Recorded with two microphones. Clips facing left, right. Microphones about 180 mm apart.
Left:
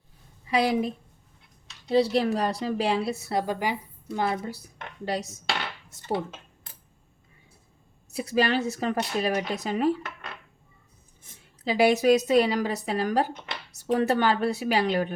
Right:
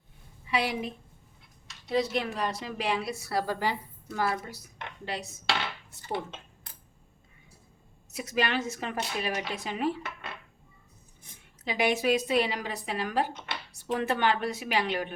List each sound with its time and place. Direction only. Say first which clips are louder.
0.4 s a woman's voice: left 6 dB; 40° left (ahead or behind)
8.1 s a woman's voice: left 5 dB; 35° left (ahead or behind)
11.6 s a woman's voice: left 6 dB; 35° left (ahead or behind)